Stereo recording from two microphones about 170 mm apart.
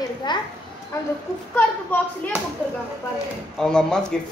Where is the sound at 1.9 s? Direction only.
10° left (ahead or behind).